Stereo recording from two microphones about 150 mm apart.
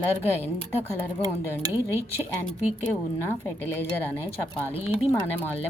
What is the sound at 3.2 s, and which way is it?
Speech, 15° left (ahead or behind).